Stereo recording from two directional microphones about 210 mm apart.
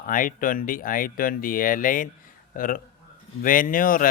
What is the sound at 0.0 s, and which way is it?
Speech, 40° left (ahead or behind).